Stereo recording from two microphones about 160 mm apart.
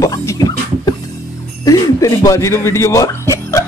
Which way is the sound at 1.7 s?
20° left (ahead or behind).